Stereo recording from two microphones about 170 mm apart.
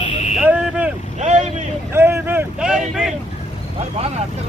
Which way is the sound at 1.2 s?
45° right (ahead or behind).